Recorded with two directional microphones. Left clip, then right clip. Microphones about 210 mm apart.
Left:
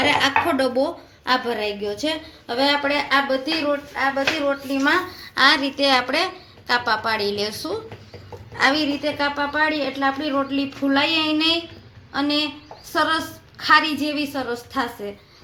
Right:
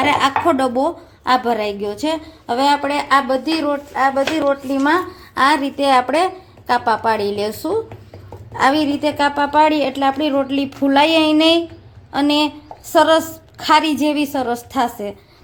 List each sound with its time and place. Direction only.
0.0 s a woman's voice: 50° right (ahead or behind)